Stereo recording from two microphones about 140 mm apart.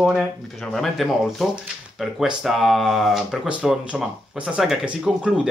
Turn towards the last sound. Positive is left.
turn(degrees=-5)  # may be behind; listen again after turning